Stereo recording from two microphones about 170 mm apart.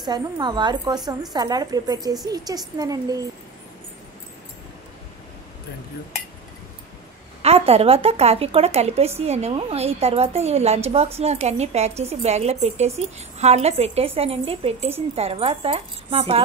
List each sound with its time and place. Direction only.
0.0 s a woman's voice: 25° right (ahead or behind)
7.4 s speech: 35° right (ahead or behind)